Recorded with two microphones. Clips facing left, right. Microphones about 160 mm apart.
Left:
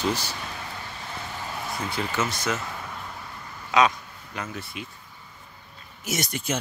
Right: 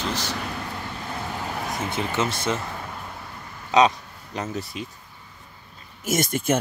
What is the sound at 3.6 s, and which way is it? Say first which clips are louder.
Speech: right 3 dB; 30° right (ahead or behind).